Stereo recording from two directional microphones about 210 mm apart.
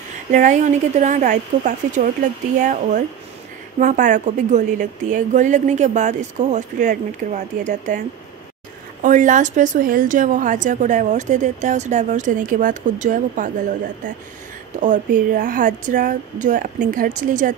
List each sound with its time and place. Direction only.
0.3 s a woman's voice: 35° right (ahead or behind)
9.0 s a woman's voice: 35° right (ahead or behind)